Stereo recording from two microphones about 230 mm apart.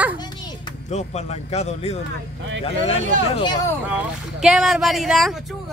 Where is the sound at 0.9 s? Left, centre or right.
Left.